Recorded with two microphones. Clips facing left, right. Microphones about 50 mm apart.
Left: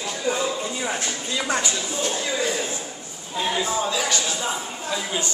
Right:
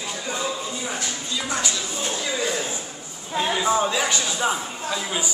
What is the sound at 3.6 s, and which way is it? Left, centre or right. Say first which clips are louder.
Speech: right 3 dB; right.